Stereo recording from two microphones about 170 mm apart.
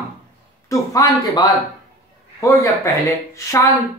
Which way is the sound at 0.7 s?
20° left (ahead or behind).